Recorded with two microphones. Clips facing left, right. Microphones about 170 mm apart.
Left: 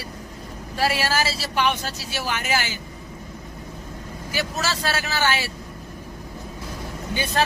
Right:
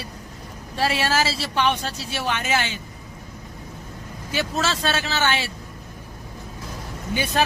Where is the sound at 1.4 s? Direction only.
10° left (ahead or behind).